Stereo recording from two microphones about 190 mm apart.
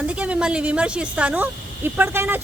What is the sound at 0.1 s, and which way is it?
Speech, 5° right (ahead or behind).